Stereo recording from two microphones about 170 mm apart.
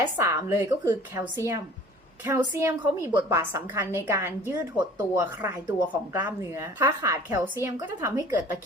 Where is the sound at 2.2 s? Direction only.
15° right (ahead or behind).